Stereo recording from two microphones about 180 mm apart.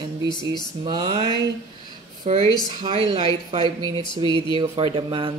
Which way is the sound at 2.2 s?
35° right (ahead or behind).